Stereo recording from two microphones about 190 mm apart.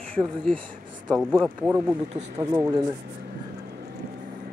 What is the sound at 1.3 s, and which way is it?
Speech, 15° right (ahead or behind).